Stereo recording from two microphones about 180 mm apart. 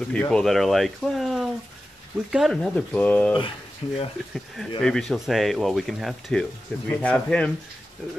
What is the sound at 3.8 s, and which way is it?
Speech, 30° left (ahead or behind).